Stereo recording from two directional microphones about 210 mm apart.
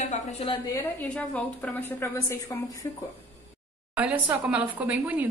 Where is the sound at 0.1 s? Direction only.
30° left (ahead or behind).